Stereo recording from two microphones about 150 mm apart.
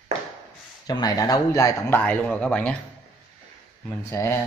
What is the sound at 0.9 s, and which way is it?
Speech, 25° left (ahead or behind).